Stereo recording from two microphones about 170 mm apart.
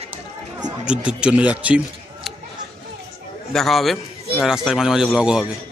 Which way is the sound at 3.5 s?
Centre (ahead or behind).